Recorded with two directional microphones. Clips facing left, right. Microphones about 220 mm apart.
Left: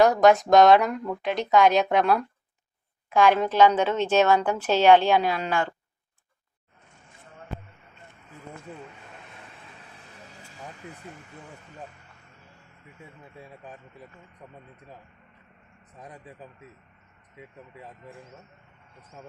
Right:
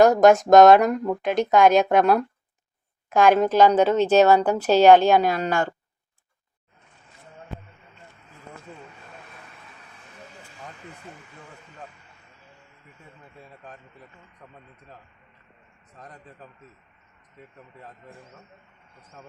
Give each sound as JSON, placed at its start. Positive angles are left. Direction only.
{"t": 0.0, "sound": "speech", "side_deg": -45}
{"t": 16.0, "sound": "a man's voice", "side_deg": 10}